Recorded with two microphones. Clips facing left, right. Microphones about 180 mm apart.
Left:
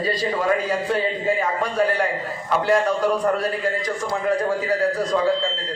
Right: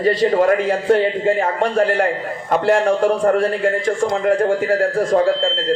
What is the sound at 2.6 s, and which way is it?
A man's voice, 60° right (ahead or behind).